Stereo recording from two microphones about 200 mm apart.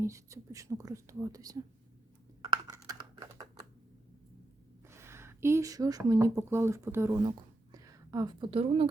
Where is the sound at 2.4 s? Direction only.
20° right (ahead or behind).